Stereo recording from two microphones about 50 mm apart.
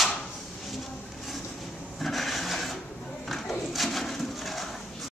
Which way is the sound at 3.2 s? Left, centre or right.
Centre.